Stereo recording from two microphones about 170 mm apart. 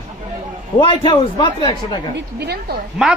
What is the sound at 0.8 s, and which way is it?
A man's voice, 30° left (ahead or behind).